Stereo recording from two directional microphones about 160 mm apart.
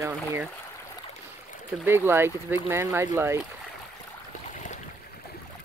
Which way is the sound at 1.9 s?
15° right (ahead or behind).